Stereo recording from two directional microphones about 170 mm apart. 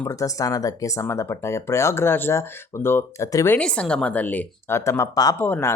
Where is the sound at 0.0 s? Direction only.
20° left (ahead or behind).